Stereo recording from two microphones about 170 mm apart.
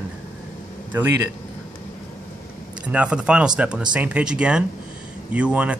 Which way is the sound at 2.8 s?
5° right (ahead or behind).